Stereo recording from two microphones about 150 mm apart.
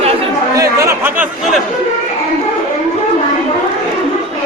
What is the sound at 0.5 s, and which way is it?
Speech, 20° right (ahead or behind).